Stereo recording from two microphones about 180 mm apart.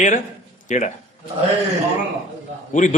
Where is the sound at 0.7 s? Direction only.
45° left (ahead or behind).